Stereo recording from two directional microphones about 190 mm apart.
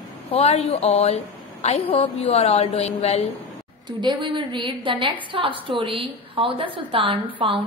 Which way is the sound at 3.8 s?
25° right (ahead or behind).